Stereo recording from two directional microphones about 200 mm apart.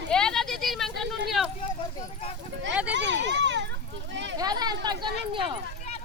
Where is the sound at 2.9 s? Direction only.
60° right (ahead or behind).